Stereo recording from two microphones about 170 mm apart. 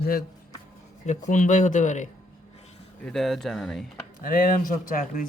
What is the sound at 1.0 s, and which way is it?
A man's voice, 45° left (ahead or behind).